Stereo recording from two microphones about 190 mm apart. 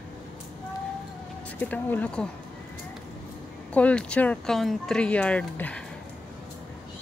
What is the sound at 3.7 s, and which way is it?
Speech, 5° left (ahead or behind).